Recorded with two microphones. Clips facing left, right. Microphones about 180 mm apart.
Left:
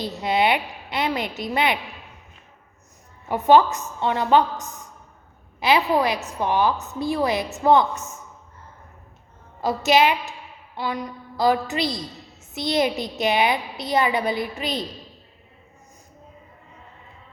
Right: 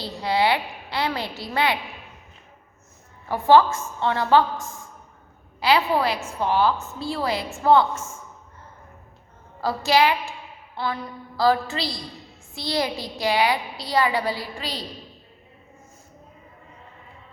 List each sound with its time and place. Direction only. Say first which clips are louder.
0.0 s a child's voice: left 1 dB; 20° left (ahead or behind)
3.2 s a child's voice: even; 20° left (ahead or behind)
9.6 s a child's voice: left 1 dB; 20° left (ahead or behind)